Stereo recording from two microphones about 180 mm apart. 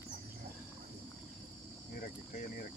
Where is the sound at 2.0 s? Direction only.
50° left (ahead or behind).